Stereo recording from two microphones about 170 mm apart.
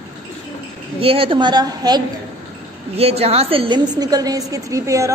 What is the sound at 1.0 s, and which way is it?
A woman's voice, 35° right (ahead or behind).